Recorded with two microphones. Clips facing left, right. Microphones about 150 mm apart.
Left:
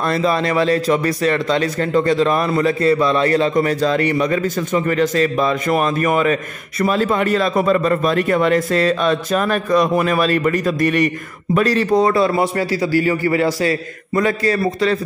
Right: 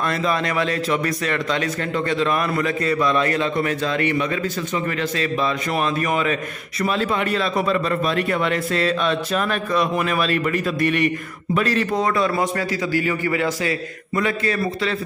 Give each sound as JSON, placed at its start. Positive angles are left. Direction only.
{"t": 0.0, "sound": "a man's voice", "side_deg": 35}